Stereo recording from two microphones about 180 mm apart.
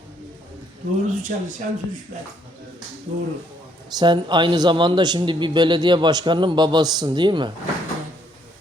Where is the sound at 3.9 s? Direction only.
25° right (ahead or behind).